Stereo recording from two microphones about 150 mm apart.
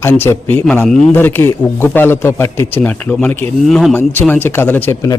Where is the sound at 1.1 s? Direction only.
15° left (ahead or behind).